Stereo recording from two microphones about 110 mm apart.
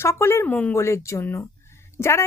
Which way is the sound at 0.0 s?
25° left (ahead or behind).